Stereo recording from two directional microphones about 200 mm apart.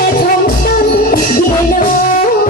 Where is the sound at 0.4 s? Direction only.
45° left (ahead or behind).